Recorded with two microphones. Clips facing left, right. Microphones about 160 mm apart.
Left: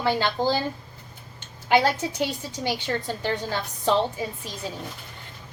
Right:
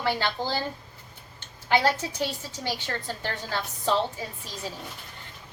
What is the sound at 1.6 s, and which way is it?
A woman's voice, 15° left (ahead or behind).